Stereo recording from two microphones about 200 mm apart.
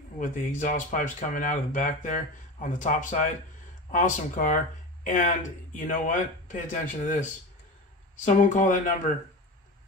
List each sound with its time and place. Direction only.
0.2 s speech: 40° left (ahead or behind)
8.3 s speech: 40° left (ahead or behind)